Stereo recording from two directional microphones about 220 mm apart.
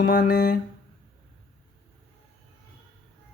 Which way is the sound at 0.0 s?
40° left (ahead or behind).